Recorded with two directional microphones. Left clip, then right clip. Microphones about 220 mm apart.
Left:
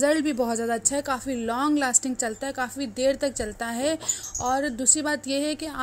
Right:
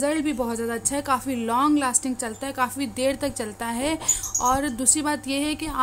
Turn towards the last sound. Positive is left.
turn(degrees=10)  # may be behind; listen again after turning